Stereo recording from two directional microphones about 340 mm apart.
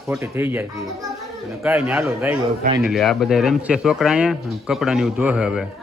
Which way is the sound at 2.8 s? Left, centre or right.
Centre.